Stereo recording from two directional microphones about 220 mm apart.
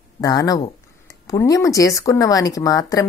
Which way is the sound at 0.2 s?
15° left (ahead or behind).